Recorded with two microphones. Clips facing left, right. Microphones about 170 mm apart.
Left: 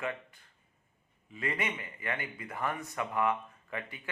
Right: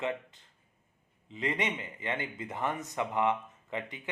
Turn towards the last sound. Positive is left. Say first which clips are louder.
# right 3 dB
turn(degrees=-20)  # may be behind; listen again after turning